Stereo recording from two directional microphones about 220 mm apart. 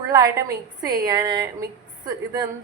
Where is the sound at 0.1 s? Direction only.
15° right (ahead or behind).